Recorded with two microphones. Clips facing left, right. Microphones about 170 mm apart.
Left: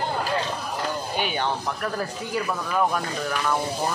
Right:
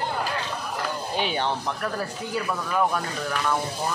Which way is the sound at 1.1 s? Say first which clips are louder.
Right 2 dB; 30° right (ahead or behind).